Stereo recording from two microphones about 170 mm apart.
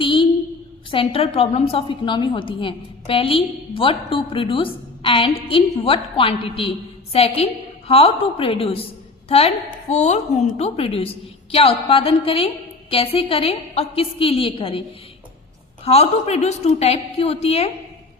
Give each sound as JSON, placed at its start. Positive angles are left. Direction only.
{"t": 0.0, "sound": "a sound", "side_deg": 30}
{"t": 0.9, "sound": "a woman's voice", "side_deg": 35}
{"t": 9.9, "sound": "a woman's voice", "side_deg": 40}
{"t": 15.8, "sound": "a woman's voice", "side_deg": 40}